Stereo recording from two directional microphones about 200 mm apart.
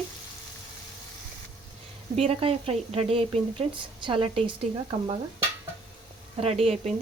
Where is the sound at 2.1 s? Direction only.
30° right (ahead or behind).